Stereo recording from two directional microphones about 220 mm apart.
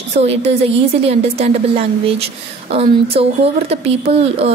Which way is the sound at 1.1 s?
25° right (ahead or behind).